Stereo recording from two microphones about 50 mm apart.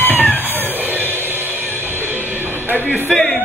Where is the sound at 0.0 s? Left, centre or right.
Left.